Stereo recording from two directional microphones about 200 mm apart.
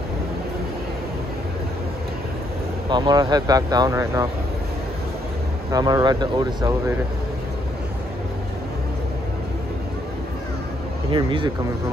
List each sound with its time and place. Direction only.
2.9 s speech: 20° right (ahead or behind)
5.7 s speech: 20° right (ahead or behind)
11.1 s speech: 25° right (ahead or behind)